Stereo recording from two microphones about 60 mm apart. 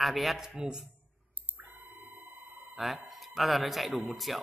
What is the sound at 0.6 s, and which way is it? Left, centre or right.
Speech, centre.